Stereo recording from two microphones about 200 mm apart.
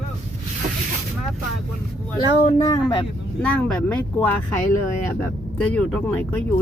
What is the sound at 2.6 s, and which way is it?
Speech, 20° left (ahead or behind).